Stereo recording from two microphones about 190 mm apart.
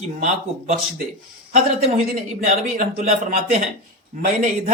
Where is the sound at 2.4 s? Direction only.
40° right (ahead or behind).